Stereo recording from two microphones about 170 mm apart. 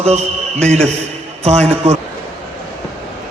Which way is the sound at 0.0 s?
40° right (ahead or behind).